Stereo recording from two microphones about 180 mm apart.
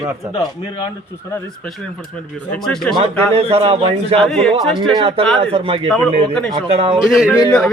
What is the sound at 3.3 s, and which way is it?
Speech, 35° right (ahead or behind).